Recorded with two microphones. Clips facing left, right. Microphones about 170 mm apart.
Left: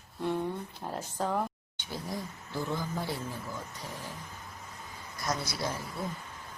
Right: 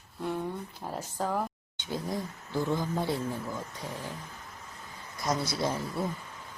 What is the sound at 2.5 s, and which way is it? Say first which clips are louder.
Speech: right 4 dB; 20° right (ahead or behind).